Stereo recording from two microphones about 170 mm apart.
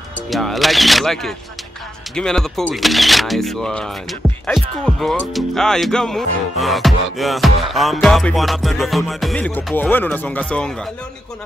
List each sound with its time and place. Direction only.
0.3 s speech: centre (ahead or behind)